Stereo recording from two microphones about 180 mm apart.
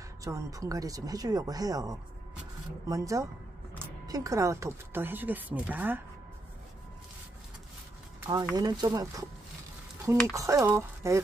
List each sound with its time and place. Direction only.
0.2 s speech: 20° right (ahead or behind)
8.5 s speech: 20° right (ahead or behind)